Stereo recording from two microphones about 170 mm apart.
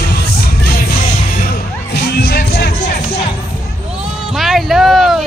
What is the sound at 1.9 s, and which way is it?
Music, 70° left (ahead or behind).